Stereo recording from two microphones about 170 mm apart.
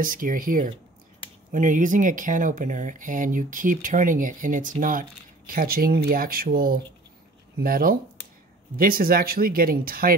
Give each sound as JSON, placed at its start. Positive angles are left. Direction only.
{"t": 0.0, "sound": "speech", "side_deg": -55}